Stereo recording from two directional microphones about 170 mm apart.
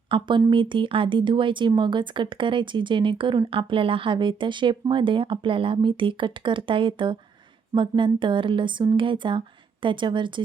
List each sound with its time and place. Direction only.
0.1 s speech: 30° right (ahead or behind)